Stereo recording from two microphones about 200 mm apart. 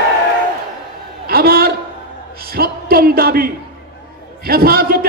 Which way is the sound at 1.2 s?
50° right (ahead or behind).